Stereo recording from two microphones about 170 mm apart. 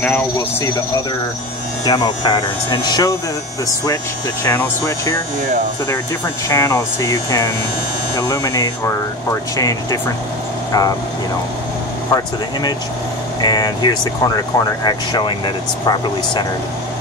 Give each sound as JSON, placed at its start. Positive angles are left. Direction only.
{"t": 0.0, "sound": "speech", "side_deg": 10}
{"t": 1.9, "sound": "speech", "side_deg": 25}
{"t": 4.5, "sound": "speech", "side_deg": 20}
{"t": 6.5, "sound": "speech", "side_deg": 20}
{"t": 13.4, "sound": "speech", "side_deg": 25}